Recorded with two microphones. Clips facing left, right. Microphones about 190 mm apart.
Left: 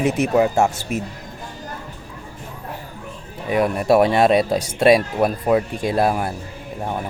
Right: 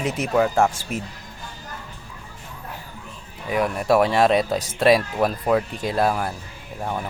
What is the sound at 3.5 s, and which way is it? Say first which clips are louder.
Speech: left 3 dB; 25° left (ahead or behind).